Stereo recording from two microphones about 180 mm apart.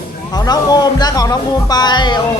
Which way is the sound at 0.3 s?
20° left (ahead or behind).